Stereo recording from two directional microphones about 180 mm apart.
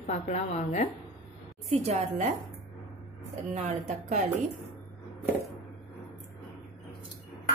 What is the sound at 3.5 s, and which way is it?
Speech, 40° right (ahead or behind).